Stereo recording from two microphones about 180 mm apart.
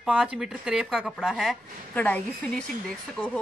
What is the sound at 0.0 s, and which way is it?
Speech, 5° right (ahead or behind).